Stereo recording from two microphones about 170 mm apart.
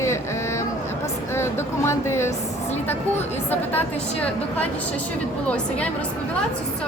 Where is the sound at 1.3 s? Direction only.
15° left (ahead or behind).